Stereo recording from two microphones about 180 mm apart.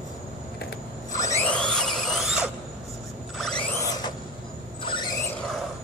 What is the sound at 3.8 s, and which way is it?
Vehicle, 20° left (ahead or behind).